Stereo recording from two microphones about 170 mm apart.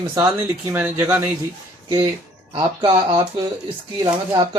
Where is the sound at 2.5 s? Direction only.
30° right (ahead or behind).